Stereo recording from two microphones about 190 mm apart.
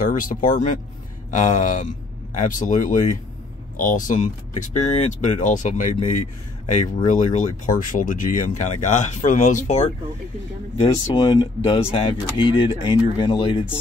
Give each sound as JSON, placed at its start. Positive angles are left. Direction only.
{"t": 0.0, "sound": "speech", "side_deg": 45}
{"t": 11.3, "sound": "speech", "side_deg": 25}